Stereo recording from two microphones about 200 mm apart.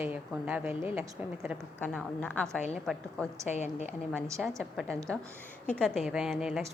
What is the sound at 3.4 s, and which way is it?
Speech, 35° left (ahead or behind).